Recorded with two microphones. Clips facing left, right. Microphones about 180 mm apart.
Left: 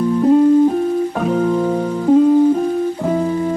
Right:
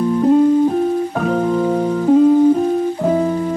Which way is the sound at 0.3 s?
10° right (ahead or behind).